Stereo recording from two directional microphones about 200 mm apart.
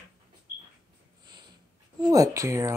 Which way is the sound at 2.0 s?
15° right (ahead or behind).